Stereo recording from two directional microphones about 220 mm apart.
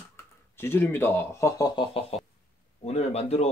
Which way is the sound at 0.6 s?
10° left (ahead or behind).